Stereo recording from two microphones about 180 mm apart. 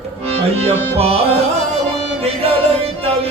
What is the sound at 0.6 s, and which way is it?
Music, 35° right (ahead or behind).